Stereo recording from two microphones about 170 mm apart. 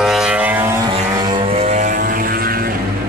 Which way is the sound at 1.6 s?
45° right (ahead or behind).